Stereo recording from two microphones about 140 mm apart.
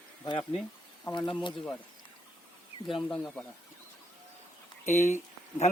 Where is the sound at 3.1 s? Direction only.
5° left (ahead or behind).